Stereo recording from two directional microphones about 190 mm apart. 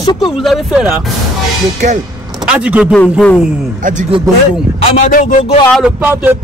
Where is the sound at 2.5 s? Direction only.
5° right (ahead or behind).